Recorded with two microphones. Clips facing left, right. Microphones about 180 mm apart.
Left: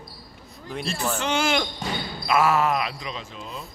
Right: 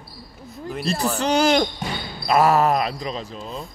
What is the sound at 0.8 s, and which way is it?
Speech, 35° right (ahead or behind).